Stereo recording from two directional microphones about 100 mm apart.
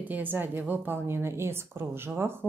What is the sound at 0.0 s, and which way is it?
A woman's voice, 15° right (ahead or behind).